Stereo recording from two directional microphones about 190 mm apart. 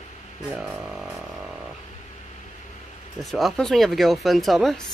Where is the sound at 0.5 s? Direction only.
5° right (ahead or behind).